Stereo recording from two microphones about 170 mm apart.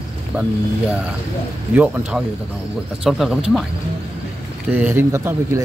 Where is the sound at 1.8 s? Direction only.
10° right (ahead or behind).